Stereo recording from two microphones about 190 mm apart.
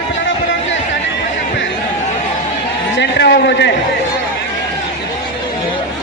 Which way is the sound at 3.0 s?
65° left (ahead or behind).